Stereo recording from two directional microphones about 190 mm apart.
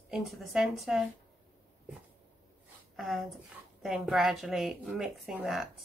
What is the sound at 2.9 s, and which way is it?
A woman's voice, centre (ahead or behind).